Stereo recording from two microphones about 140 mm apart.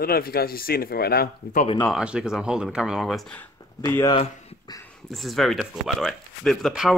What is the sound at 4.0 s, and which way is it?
Speech, 30° left (ahead or behind).